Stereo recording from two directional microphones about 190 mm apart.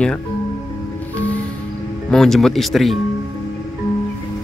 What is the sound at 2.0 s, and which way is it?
Speech, centre (ahead or behind).